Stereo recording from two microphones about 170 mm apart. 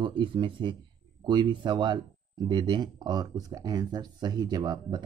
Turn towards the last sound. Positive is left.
turn(degrees=-25)  # may be behind; listen again after turning